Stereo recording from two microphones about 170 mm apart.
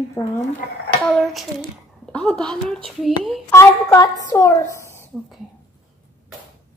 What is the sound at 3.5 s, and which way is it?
A woman's voice, 15° left (ahead or behind).